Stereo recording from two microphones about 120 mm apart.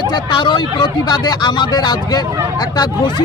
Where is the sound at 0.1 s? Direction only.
40° left (ahead or behind).